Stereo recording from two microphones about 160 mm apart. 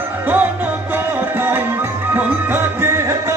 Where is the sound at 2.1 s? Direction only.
15° right (ahead or behind).